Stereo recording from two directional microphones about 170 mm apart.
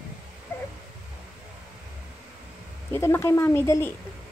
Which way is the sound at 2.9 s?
15° left (ahead or behind).